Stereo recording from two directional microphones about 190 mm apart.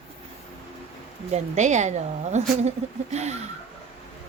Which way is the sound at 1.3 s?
40° right (ahead or behind).